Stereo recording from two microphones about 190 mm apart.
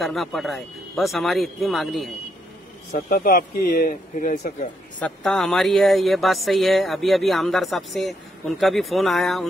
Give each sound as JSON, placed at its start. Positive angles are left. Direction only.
{"t": 0.0, "sound": "speech", "side_deg": 0}
{"t": 3.1, "sound": "speech", "side_deg": 45}
{"t": 5.0, "sound": "speech", "side_deg": 5}